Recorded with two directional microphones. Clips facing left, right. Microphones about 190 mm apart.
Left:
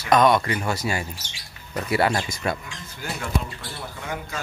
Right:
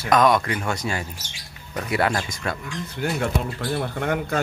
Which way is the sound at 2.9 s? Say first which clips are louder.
Right 4 dB; 55° right (ahead or behind).